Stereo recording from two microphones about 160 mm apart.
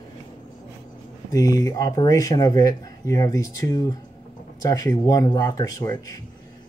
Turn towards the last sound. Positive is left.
turn(degrees=25)  # may be behind; listen again after turning